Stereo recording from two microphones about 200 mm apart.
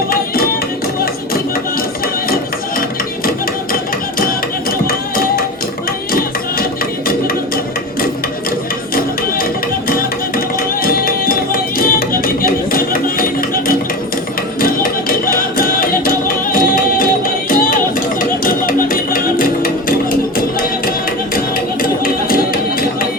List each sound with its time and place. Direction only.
9.9 s music: 45° left (ahead or behind)
15.3 s music: 45° left (ahead or behind)
21.3 s music: 45° left (ahead or behind)